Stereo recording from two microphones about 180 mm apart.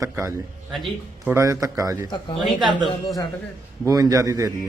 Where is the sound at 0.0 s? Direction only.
20° right (ahead or behind).